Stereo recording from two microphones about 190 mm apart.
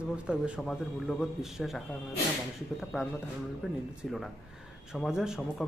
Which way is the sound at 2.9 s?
Centre (ahead or behind).